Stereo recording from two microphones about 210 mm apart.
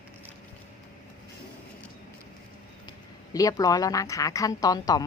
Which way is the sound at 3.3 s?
15° left (ahead or behind).